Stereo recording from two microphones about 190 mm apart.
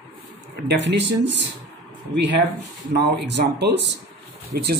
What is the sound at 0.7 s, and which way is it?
Speech, 65° right (ahead or behind).